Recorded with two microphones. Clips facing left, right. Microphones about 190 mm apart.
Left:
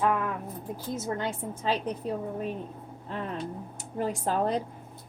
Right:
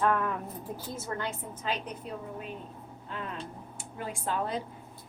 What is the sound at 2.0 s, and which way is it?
Speech, 40° left (ahead or behind).